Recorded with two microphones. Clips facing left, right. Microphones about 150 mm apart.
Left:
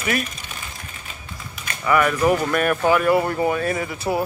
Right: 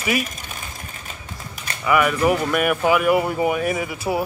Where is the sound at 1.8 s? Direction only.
5° right (ahead or behind).